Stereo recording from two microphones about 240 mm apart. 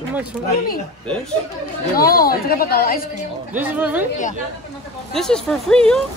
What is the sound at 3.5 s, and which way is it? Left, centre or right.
Speech, centre.